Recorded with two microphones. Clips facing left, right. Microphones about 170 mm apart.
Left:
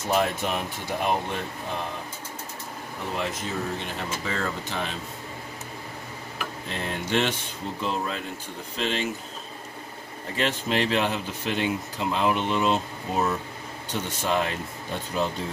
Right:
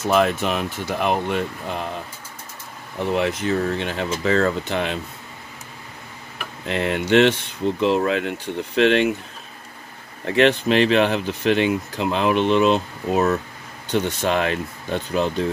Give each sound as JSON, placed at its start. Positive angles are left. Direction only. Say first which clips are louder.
{"t": 0.1, "sound": "speech", "louder": "right 5 dB", "side_deg": -75}
{"t": 3.2, "sound": "speech", "louder": "right 8 dB", "side_deg": -70}
{"t": 6.7, "sound": "speech", "louder": "right 10 dB", "side_deg": -75}
{"t": 10.2, "sound": "speech", "louder": "right 10 dB", "side_deg": -75}